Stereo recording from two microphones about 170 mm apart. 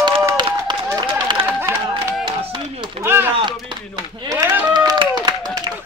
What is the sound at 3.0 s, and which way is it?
Speech, 15° right (ahead or behind).